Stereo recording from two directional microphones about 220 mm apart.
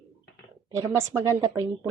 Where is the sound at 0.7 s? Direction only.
15° right (ahead or behind).